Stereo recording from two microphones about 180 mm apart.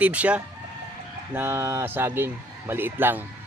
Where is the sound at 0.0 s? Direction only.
10° right (ahead or behind).